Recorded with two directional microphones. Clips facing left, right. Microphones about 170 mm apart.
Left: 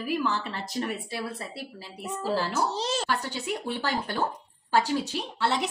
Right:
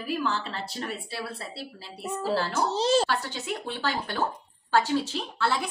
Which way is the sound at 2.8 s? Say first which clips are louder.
Right 7 dB; 30° right (ahead or behind).